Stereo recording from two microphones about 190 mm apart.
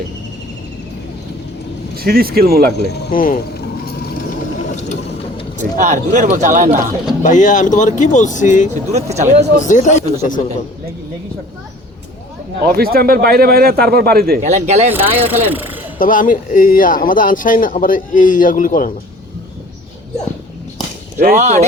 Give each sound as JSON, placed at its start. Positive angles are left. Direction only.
{"t": 2.0, "sound": "speech", "side_deg": -50}
{"t": 2.8, "sound": "speech", "side_deg": 50}
{"t": 4.7, "sound": "mechanisms", "side_deg": 40}
{"t": 5.5, "sound": "speech", "side_deg": -40}
{"t": 7.2, "sound": "speech", "side_deg": 40}
{"t": 8.9, "sound": "speech", "side_deg": -35}
{"t": 9.6, "sound": "speech", "side_deg": 40}
{"t": 12.7, "sound": "speech", "side_deg": -50}
{"t": 14.4, "sound": "speech", "side_deg": -35}
{"t": 14.9, "sound": "speech", "side_deg": -10}
{"t": 16.0, "sound": "speech", "side_deg": 45}
{"t": 21.2, "sound": "speech", "side_deg": -40}